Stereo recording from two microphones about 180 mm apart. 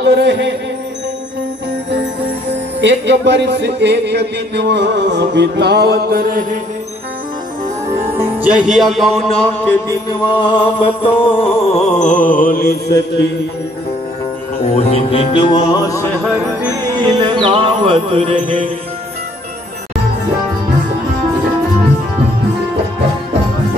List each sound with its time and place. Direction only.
0.0 s speech: 70° right (ahead or behind)
2.8 s speech: 75° right (ahead or behind); by 6.4 s 55° right (ahead or behind)
8.4 s speech: 5° right (ahead or behind)
10.0 s music: 25° left (ahead or behind)
12.0 s mantra: 45° left (ahead or behind)
14.7 s music: 35° left (ahead or behind)
17.2 s music: 30° right (ahead or behind)